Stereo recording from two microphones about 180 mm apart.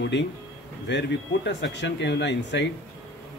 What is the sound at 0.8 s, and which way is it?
Speech, 75° left (ahead or behind).